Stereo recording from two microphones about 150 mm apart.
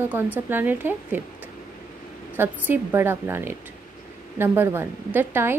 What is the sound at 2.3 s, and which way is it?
A woman's voice, 15° right (ahead or behind).